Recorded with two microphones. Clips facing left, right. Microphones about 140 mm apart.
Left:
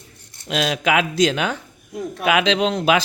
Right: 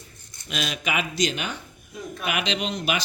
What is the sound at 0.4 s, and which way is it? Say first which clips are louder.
Speech: left 9 dB; 90° left.